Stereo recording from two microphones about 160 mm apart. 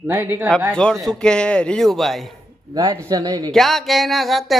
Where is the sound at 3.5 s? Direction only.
Centre (ahead or behind).